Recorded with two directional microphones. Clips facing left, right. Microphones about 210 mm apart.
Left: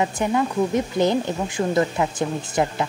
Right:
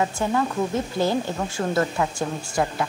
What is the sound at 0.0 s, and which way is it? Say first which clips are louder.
Speech: left 2 dB; 15° left (ahead or behind).